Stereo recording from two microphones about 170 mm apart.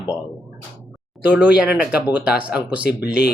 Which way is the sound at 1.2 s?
10° right (ahead or behind).